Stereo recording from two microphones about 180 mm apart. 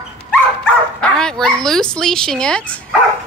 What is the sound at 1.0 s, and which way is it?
Speech, 5° left (ahead or behind).